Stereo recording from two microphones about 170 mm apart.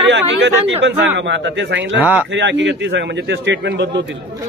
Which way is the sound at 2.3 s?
90° right.